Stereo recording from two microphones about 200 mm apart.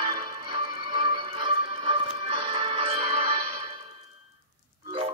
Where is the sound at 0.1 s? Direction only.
25° right (ahead or behind).